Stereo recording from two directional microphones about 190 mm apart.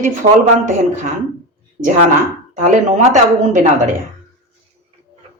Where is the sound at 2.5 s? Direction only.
40° right (ahead or behind).